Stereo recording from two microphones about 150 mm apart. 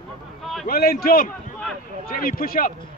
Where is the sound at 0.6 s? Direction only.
75° left (ahead or behind).